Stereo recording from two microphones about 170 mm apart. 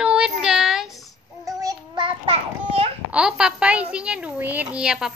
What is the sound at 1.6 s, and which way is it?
Child singing, 25° right (ahead or behind).